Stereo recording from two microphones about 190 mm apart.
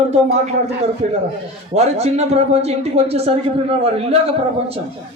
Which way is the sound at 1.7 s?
35° right (ahead or behind).